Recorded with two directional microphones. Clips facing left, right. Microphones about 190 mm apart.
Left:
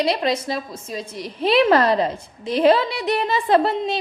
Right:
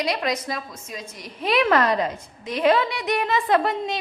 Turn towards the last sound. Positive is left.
turn(degrees=30)  # may be behind; listen again after turning